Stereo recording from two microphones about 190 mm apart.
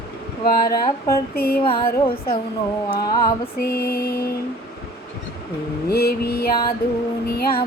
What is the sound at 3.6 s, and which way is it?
Music, 55° left (ahead or behind).